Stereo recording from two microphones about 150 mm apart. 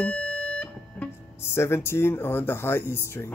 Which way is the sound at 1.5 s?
15° left (ahead or behind).